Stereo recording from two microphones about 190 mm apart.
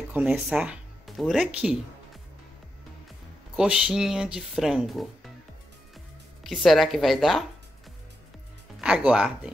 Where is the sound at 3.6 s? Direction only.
5° right (ahead or behind).